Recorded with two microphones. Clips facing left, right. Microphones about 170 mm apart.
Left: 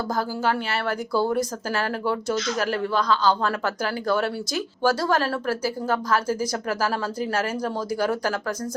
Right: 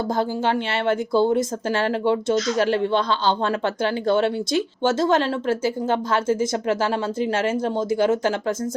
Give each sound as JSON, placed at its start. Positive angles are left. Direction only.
{"t": 0.1, "sound": "speech", "side_deg": -25}